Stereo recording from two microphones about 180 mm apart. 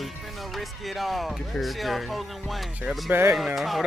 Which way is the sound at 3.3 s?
Centre (ahead or behind).